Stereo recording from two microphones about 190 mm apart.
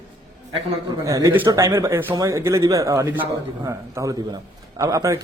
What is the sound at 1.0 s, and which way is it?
Speech, 15° right (ahead or behind).